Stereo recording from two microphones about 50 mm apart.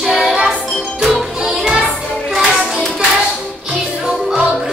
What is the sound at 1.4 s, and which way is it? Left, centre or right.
Music, centre.